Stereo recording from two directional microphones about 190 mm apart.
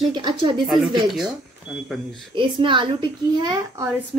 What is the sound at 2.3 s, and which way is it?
A woman's voice, 25° right (ahead or behind).